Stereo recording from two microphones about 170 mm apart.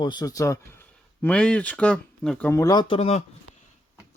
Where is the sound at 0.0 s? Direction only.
25° left (ahead or behind).